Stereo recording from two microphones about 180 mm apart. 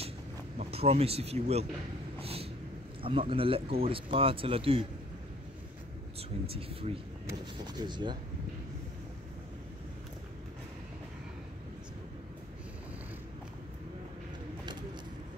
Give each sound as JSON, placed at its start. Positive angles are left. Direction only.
{"t": 0.6, "sound": "speech", "side_deg": -35}
{"t": 2.1, "sound": "a sound", "side_deg": -35}
{"t": 3.0, "sound": "speech", "side_deg": -30}
{"t": 6.4, "sound": "speech", "side_deg": -30}